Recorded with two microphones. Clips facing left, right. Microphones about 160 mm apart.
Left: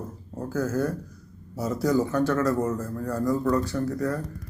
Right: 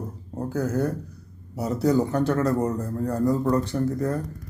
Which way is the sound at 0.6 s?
65° right (ahead or behind).